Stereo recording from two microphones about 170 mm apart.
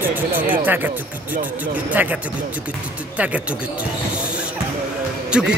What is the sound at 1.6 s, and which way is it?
Speech, 10° right (ahead or behind).